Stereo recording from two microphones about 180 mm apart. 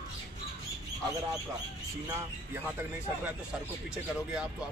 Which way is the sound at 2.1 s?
15° right (ahead or behind).